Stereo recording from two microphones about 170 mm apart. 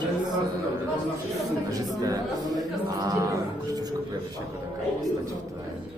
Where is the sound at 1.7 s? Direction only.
20° right (ahead or behind).